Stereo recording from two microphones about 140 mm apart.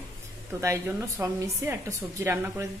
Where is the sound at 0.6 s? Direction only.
20° right (ahead or behind).